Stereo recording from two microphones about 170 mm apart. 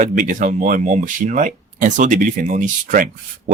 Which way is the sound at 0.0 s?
50° right (ahead or behind).